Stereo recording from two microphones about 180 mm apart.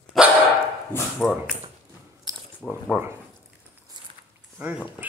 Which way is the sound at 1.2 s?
Centre (ahead or behind).